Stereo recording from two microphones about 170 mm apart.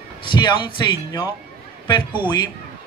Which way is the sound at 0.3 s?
25° left (ahead or behind).